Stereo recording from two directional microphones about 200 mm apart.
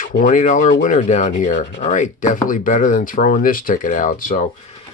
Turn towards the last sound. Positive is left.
turn(degrees=45)  # may be behind; listen again after turning